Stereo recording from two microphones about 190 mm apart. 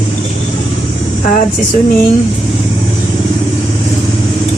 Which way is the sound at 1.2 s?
40° left (ahead or behind).